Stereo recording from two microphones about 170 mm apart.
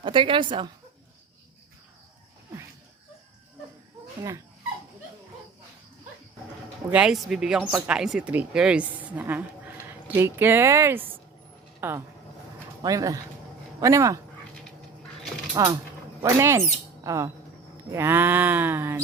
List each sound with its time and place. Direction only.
0.0 s a woman's voice: 30° right (ahead or behind)
4.2 s livestock: 20° right (ahead or behind)
6.9 s a woman's voice: 5° right (ahead or behind); by 13.1 s 20° right (ahead or behind)
13.8 s livestock: 20° right (ahead or behind)
15.6 s a woman's voice: 20° right (ahead or behind)
16.2 s livestock: 15° right (ahead or behind)
17.0 s speech: 20° right (ahead or behind)
17.9 s livestock: 15° right (ahead or behind)